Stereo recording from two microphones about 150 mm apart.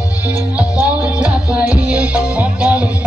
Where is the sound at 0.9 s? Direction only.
5° right (ahead or behind).